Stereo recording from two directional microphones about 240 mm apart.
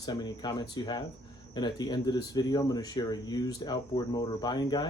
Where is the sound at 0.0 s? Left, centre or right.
Centre.